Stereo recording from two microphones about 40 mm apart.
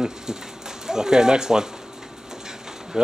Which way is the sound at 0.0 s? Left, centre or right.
Centre.